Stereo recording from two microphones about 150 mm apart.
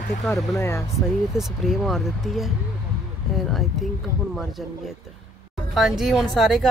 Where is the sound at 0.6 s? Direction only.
15° left (ahead or behind).